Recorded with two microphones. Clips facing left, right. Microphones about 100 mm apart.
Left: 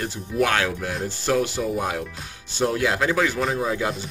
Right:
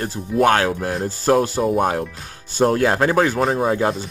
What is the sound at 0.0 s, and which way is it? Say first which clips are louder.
Speech: right 6 dB; 40° right (ahead or behind).